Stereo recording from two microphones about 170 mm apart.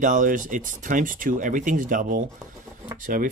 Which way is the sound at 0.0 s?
50° right (ahead or behind).